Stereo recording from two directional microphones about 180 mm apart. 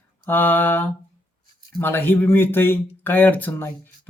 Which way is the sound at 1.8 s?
10° left (ahead or behind).